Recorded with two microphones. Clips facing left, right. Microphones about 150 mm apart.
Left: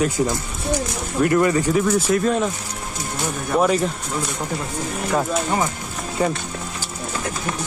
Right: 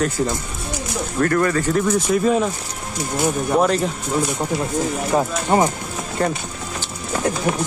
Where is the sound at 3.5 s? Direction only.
5° left (ahead or behind).